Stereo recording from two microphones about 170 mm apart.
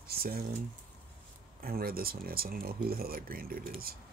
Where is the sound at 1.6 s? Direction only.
60° right (ahead or behind).